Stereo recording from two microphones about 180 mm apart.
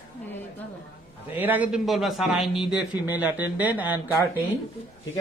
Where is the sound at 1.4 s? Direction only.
10° right (ahead or behind).